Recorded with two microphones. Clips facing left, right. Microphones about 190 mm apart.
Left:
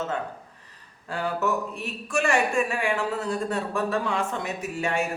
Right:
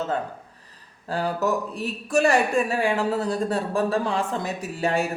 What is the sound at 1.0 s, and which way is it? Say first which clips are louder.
A man's voice: right 2 dB; 35° right (ahead or behind).